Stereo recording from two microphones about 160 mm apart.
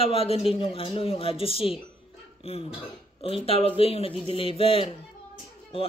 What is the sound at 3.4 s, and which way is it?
Speech, 35° left (ahead or behind).